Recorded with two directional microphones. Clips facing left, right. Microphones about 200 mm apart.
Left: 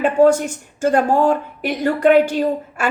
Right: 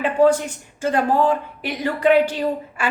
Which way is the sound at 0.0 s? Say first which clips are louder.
Left 3 dB; 45° left (ahead or behind).